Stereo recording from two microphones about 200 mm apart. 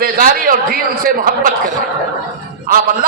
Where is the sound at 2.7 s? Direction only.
45° right (ahead or behind).